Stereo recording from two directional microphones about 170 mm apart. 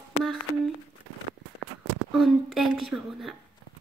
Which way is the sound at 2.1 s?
Centre (ahead or behind).